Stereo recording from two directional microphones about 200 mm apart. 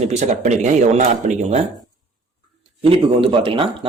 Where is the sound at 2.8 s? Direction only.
25° right (ahead or behind).